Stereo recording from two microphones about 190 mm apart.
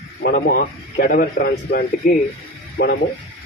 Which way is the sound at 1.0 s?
50° left (ahead or behind).